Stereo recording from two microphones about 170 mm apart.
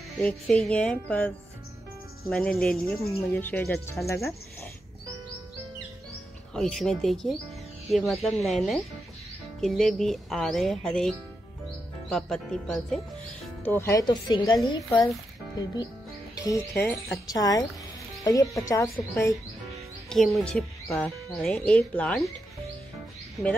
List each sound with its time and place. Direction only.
0.2 s speech: 5° left (ahead or behind)
4.0 s speech: 15° left (ahead or behind)
6.5 s speech: centre (ahead or behind)
13.7 s speech: 15° left (ahead or behind)
14.0 s speech: 25° left (ahead or behind)
16.3 s speech: 20° left (ahead or behind)
20.1 s speech: 5° left (ahead or behind)